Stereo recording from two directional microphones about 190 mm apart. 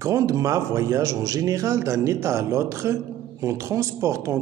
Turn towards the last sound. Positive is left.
turn(degrees=-15)  # may be behind; listen again after turning